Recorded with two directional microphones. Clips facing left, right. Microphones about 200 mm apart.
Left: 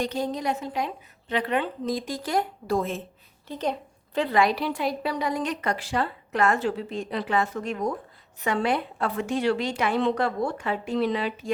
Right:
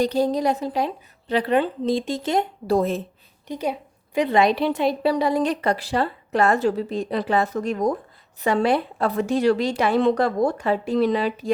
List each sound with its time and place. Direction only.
0.0 s a woman's voice: 35° right (ahead or behind)
2.7 s a woman's voice: 40° right (ahead or behind)
3.4 s a sound: 10° right (ahead or behind)
4.3 s a woman's voice: 25° right (ahead or behind)